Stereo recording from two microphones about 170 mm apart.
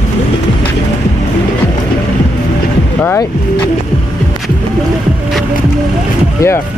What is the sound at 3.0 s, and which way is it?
Speech, 15° left (ahead or behind).